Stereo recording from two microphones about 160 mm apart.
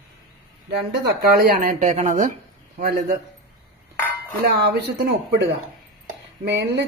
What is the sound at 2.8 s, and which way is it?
Speech, 65° right (ahead or behind).